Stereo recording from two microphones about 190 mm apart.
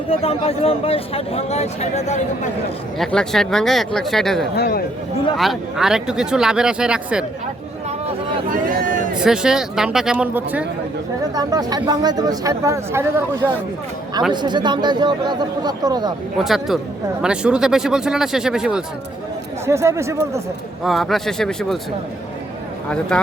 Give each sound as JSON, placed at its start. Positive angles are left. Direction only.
{"t": 0.1, "sound": "speech", "side_deg": 30}
{"t": 3.0, "sound": "speech", "side_deg": 5}
{"t": 4.5, "sound": "speech", "side_deg": 55}
{"t": 5.4, "sound": "speech", "side_deg": 0}
{"t": 7.9, "sound": "a sound", "side_deg": -40}
{"t": 9.2, "sound": "speech", "side_deg": -5}
{"t": 11.3, "sound": "speech", "side_deg": -20}
{"t": 14.3, "sound": "speech", "side_deg": -25}
{"t": 16.4, "sound": "speech", "side_deg": 0}
{"t": 19.6, "sound": "speech", "side_deg": -15}
{"t": 20.8, "sound": "speech", "side_deg": 0}
{"t": 22.9, "sound": "speech", "side_deg": 5}